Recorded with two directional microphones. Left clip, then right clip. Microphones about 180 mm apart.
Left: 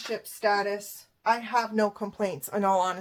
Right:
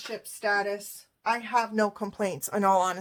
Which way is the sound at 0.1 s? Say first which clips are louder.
Left 2 dB; 15° right (ahead or behind).